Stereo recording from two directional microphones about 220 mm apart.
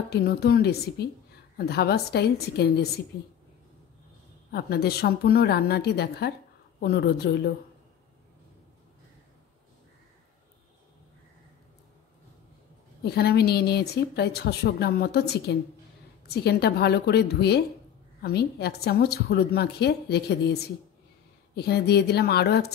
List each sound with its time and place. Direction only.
0.1 s a woman's voice: 45° left (ahead or behind)
4.5 s a woman's voice: 45° left (ahead or behind)
13.0 s a woman's voice: 45° left (ahead or behind)